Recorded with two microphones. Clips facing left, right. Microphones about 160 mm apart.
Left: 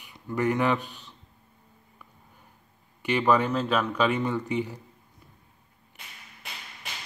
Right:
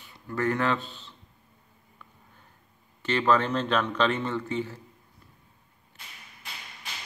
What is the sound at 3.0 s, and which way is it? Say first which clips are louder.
Speech: left 1 dB; 10° left (ahead or behind).